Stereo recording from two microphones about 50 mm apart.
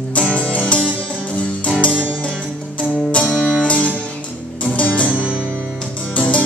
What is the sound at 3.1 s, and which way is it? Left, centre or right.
Music, left.